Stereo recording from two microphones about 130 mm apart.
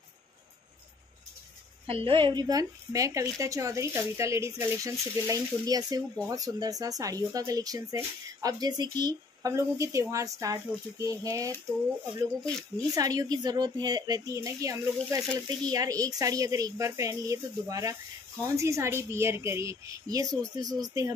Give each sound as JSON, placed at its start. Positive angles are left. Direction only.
{"t": 1.9, "sound": "speech", "side_deg": -45}
{"t": 12.7, "sound": "speech", "side_deg": -30}